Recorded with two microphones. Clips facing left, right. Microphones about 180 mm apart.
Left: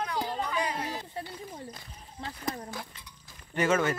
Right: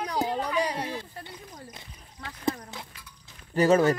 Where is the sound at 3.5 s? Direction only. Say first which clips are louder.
Right 6 dB; 35° right (ahead or behind).